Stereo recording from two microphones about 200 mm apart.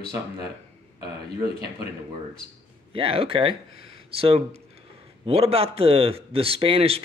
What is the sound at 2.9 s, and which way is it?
A man's voice, 30° right (ahead or behind).